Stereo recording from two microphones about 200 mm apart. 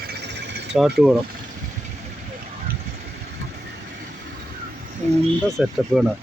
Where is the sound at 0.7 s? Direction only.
Centre (ahead or behind).